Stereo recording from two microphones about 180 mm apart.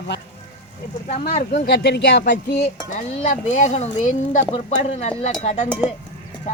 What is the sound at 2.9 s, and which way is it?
Speech, 40° left (ahead or behind).